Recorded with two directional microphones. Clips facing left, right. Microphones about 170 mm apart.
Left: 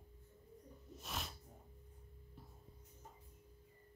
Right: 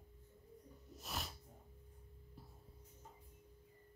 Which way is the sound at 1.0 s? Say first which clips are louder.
Even; centre (ahead or behind).